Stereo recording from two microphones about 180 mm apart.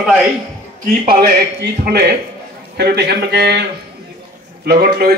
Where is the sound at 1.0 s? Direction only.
60° right (ahead or behind).